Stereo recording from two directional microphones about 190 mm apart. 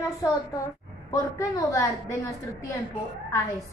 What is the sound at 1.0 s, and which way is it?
A woman's voice, 15° left (ahead or behind).